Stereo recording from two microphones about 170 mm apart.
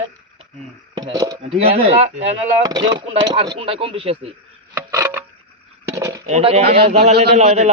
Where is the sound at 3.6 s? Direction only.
35° right (ahead or behind).